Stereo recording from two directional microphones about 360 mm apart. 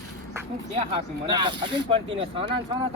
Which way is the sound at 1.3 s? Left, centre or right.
Centre.